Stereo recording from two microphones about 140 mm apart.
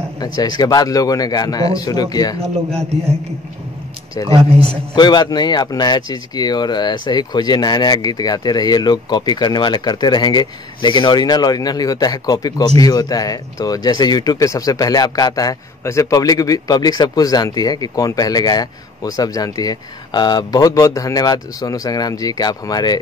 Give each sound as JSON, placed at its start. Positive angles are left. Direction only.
{"t": 0.2, "sound": "speech", "side_deg": 30}
{"t": 4.3, "sound": "a man's voice", "side_deg": -45}
{"t": 4.9, "sound": "speech", "side_deg": 30}